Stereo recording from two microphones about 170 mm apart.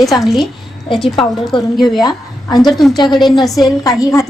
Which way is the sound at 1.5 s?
30° left (ahead or behind).